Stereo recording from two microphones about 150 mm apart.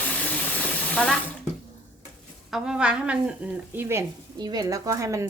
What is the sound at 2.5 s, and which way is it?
A woman's voice, 5° right (ahead or behind).